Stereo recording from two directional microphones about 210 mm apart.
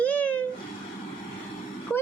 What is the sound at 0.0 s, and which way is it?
Cat, 5° left (ahead or behind).